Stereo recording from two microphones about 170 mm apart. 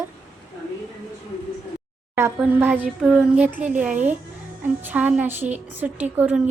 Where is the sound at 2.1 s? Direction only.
10° right (ahead or behind).